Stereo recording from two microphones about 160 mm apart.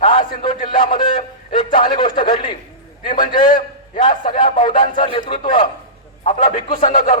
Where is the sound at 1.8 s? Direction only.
30° left (ahead or behind).